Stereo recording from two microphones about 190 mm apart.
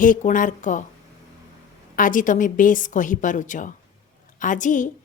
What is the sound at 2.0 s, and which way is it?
A woman's voice, 45° left (ahead or behind).